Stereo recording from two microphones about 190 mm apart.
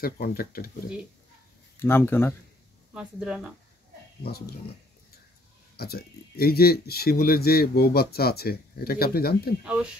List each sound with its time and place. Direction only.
0.0 s speech: 50° left (ahead or behind)
1.8 s speech: 10° left (ahead or behind)
2.9 s speech: 5° right (ahead or behind)
4.2 s speech: 55° left (ahead or behind)
5.8 s speech: 55° left (ahead or behind)
9.6 s speech: 5° right (ahead or behind)